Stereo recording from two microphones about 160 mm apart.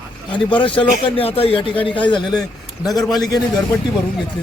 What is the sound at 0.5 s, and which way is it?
Speech, 30° left (ahead or behind).